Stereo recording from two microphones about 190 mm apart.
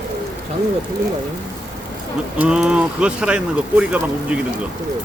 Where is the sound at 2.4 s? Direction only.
5° right (ahead or behind).